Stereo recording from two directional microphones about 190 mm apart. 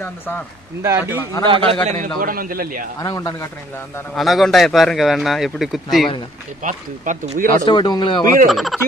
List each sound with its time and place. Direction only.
0.8 s a man's voice: 10° right (ahead or behind)
1.4 s a man's voice: 25° right (ahead or behind)
1.9 s a man's voice: 45° right (ahead or behind)
3.0 s speech: 20° left (ahead or behind)
4.1 s speech: centre (ahead or behind)
6.6 s speech: 40° right (ahead or behind)
7.6 s speech: 25° left (ahead or behind)
8.5 s speech: centre (ahead or behind)